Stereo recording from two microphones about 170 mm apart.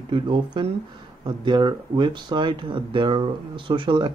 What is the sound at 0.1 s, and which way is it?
Speech, 30° right (ahead or behind).